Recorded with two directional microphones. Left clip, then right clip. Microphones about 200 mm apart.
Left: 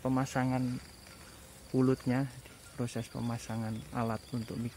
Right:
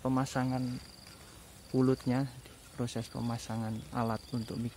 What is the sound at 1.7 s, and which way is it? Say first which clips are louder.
Speech: even; centre (ahead or behind).